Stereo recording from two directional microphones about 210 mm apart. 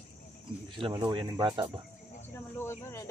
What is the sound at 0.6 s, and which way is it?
Speech, 25° right (ahead or behind).